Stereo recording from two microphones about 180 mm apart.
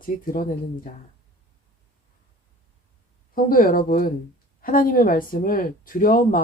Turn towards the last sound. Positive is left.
turn(degrees=50)  # may be behind; listen again after turning